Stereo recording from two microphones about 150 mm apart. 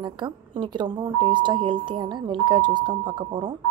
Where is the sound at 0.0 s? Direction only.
30° right (ahead or behind).